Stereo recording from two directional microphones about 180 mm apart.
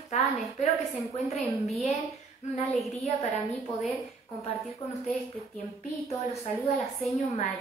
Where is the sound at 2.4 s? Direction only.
40° left (ahead or behind).